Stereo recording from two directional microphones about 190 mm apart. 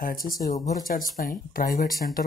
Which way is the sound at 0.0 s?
50° left (ahead or behind).